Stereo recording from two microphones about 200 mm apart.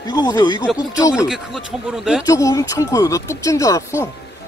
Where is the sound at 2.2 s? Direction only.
15° left (ahead or behind).